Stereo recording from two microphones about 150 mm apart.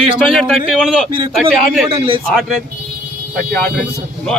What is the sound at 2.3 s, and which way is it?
Speech, centre (ahead or behind).